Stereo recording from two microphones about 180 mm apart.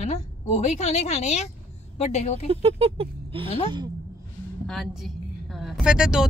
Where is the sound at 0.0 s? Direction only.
40° left (ahead or behind).